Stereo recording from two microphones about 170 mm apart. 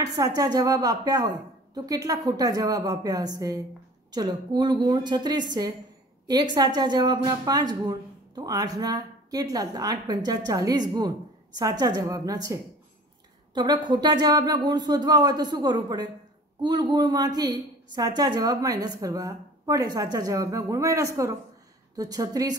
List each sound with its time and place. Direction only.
0.0 s a woman's voice: 20° right (ahead or behind)
13.6 s a woman's voice: 25° right (ahead or behind)